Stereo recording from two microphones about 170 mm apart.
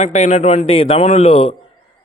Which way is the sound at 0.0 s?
40° left (ahead or behind).